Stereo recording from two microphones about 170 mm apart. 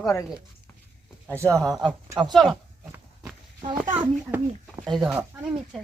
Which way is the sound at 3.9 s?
10° right (ahead or behind).